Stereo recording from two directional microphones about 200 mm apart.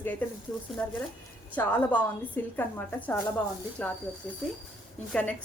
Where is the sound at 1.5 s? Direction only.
10° left (ahead or behind).